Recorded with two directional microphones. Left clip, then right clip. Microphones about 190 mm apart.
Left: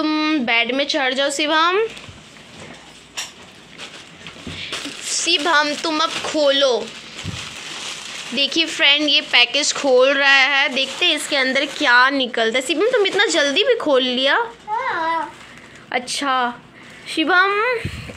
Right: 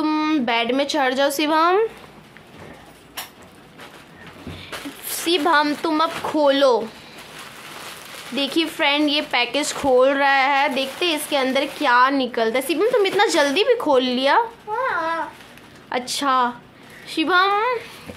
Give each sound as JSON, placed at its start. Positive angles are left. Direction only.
{"t": 0.0, "sound": "a woman's voice", "side_deg": -10}
{"t": 5.2, "sound": "speech", "side_deg": -10}
{"t": 6.3, "sound": "speech", "side_deg": -20}
{"t": 8.4, "sound": "a woman's voice", "side_deg": -5}
{"t": 15.9, "sound": "a woman's voice", "side_deg": -5}